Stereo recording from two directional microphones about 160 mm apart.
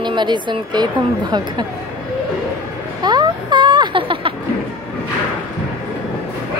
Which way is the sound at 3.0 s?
30° right (ahead or behind).